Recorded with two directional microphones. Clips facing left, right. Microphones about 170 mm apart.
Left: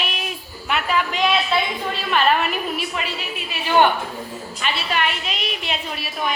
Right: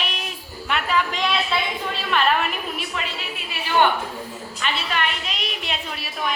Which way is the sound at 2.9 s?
15° left (ahead or behind).